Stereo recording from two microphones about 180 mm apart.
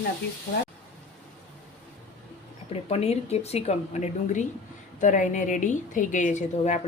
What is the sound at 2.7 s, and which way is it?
A woman's voice, 35° left (ahead or behind).